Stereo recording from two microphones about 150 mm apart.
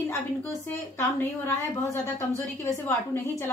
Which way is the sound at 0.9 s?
20° left (ahead or behind).